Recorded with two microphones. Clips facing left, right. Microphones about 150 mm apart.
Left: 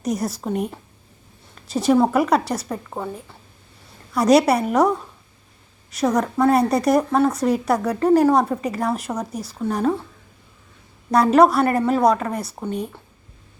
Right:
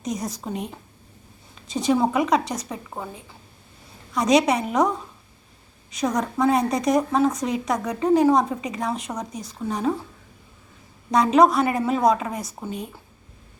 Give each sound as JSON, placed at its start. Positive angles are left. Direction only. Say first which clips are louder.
{"t": 0.0, "sound": "a woman's voice", "louder": "left 5 dB", "side_deg": 5}
{"t": 5.9, "sound": "a woman's voice", "louder": "left 4 dB", "side_deg": 5}
{"t": 11.1, "sound": "a woman's voice", "louder": "left 2 dB", "side_deg": 5}
{"t": 12.3, "sound": "speech", "louder": "left 4 dB", "side_deg": 65}
{"t": 12.6, "sound": "a woman's voice", "louder": "left 7 dB", "side_deg": 0}